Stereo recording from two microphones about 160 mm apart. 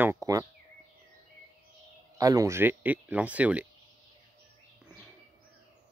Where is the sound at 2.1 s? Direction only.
20° right (ahead or behind).